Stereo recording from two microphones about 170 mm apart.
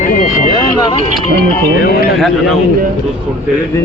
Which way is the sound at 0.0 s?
50° left (ahead or behind).